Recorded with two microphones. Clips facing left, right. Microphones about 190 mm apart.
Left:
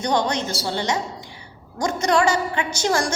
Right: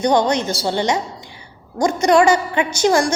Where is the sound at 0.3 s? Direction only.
15° right (ahead or behind).